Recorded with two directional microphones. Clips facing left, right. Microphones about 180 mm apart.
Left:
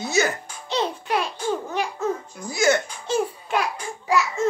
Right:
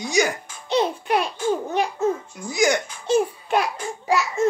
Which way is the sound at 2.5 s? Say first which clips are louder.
Even; 15° right (ahead or behind).